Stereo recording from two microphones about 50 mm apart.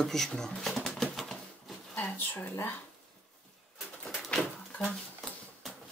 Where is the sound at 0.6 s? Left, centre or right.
Centre.